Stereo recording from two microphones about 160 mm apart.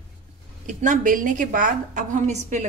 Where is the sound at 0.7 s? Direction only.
55° right (ahead or behind).